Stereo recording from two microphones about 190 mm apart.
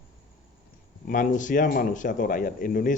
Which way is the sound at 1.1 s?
45° left (ahead or behind).